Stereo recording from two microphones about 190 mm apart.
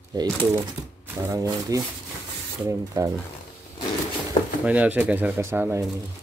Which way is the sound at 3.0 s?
20° right (ahead or behind).